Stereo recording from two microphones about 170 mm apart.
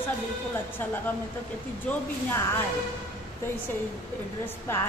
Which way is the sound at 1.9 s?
10° left (ahead or behind).